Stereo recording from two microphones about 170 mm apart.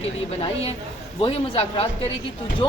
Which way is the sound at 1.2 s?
35° left (ahead or behind).